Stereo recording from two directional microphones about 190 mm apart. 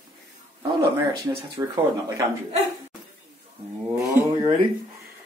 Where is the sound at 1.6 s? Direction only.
15° right (ahead or behind).